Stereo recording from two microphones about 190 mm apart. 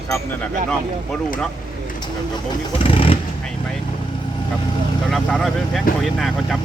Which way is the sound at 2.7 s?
30° left (ahead or behind).